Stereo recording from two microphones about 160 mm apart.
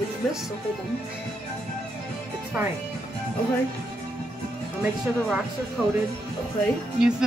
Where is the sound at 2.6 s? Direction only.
10° right (ahead or behind).